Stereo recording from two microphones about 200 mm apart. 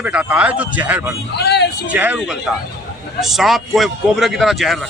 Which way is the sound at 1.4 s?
55° left (ahead or behind).